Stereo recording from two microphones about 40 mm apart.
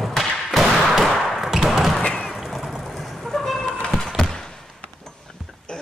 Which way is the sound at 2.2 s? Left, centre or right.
Centre.